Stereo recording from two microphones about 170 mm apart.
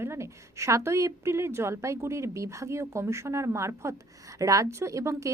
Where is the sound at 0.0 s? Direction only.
15° right (ahead or behind).